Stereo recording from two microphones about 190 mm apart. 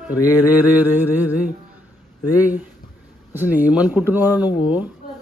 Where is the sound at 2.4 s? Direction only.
10° right (ahead or behind).